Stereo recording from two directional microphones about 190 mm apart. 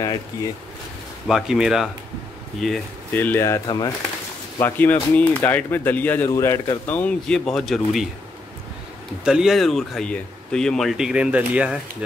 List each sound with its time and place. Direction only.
1.2 s speech: centre (ahead or behind); by 3.9 s 20° left (ahead or behind)
4.6 s speech: 10° left (ahead or behind)
9.2 s speech: 5° right (ahead or behind)